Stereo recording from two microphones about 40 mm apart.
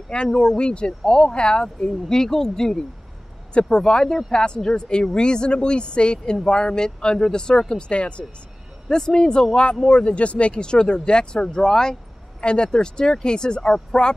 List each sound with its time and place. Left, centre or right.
0.1 s speech: centre
7.7 s speech: left
8.8 s speech: centre
12.4 s speech: left